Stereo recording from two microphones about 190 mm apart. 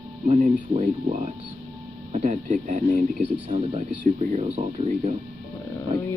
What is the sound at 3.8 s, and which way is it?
Speech, 40° right (ahead or behind).